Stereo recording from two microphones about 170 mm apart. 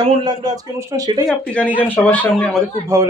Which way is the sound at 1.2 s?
5° left (ahead or behind).